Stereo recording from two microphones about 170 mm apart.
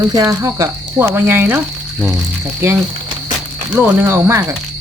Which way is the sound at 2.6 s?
15° right (ahead or behind).